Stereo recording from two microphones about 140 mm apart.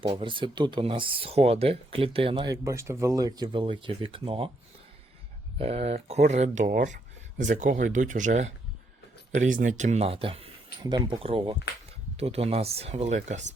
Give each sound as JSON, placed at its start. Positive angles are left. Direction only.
{"t": 0.0, "sound": "speech", "side_deg": -35}
{"t": 5.5, "sound": "speech", "side_deg": -45}
{"t": 6.7, "sound": "speech", "side_deg": -75}